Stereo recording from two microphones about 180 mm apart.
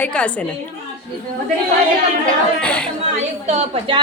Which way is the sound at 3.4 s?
35° right (ahead or behind).